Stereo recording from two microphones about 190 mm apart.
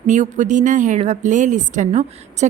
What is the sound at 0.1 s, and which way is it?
A woman's voice, 40° right (ahead or behind).